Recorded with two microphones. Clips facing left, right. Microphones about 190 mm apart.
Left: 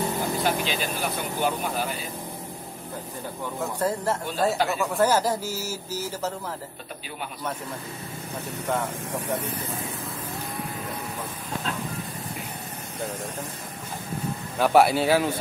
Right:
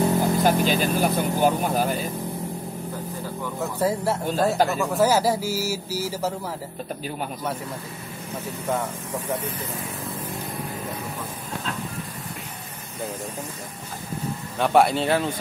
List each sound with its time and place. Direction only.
0.4 s speech: 45° right (ahead or behind)
3.8 s speech: 10° right (ahead or behind)
14.6 s speech: 5° left (ahead or behind)